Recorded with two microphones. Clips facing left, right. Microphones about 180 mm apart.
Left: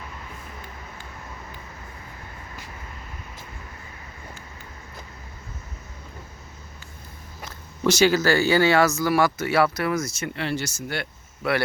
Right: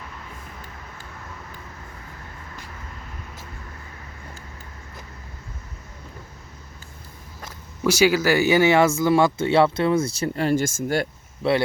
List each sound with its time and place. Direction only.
7.9 s speech: 10° right (ahead or behind); by 11.1 s 40° right (ahead or behind)
11.4 s speech: 30° right (ahead or behind)